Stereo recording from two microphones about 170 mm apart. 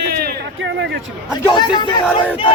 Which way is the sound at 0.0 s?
70° right (ahead or behind).